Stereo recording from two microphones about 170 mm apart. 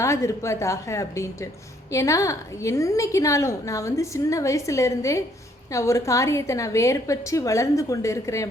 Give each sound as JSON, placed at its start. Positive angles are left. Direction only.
{"t": 0.0, "sound": "a woman's voice", "side_deg": 15}